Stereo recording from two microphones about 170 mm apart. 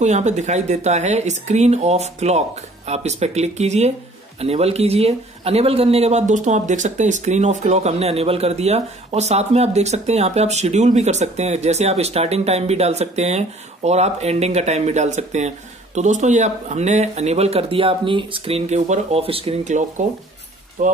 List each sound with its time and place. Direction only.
0.0 s a man's voice: 45° right (ahead or behind)